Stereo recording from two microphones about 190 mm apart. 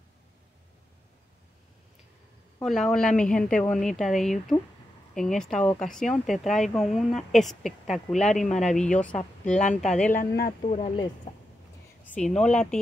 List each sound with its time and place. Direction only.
2.6 s a woman's voice: centre (ahead or behind)
10.1 s speech: 45° left (ahead or behind)
12.1 s a woman's voice: 5° left (ahead or behind)